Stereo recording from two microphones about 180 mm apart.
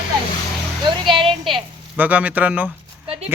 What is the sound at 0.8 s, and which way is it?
Speech, 30° right (ahead or behind).